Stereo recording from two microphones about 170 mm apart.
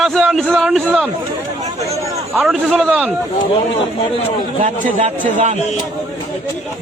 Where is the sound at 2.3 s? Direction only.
10° right (ahead or behind).